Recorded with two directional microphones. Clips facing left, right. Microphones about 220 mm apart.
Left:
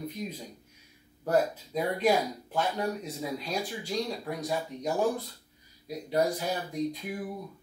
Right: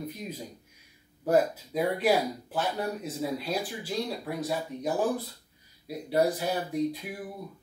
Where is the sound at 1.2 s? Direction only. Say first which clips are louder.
Right 2 dB; 10° right (ahead or behind).